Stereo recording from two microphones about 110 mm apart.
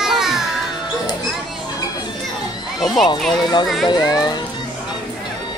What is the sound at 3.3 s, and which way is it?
Speech, 40° left (ahead or behind).